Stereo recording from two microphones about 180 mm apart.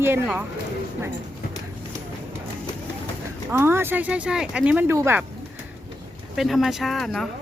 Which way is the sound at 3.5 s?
15° right (ahead or behind).